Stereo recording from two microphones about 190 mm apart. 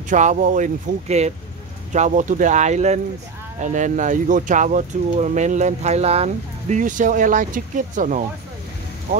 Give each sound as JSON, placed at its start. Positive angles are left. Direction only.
{"t": 0.1, "sound": "speech", "side_deg": -40}